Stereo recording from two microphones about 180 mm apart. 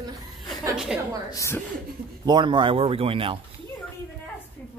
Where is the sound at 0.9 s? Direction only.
5° right (ahead or behind).